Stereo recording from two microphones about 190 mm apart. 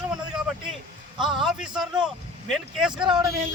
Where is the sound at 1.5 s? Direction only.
5° right (ahead or behind).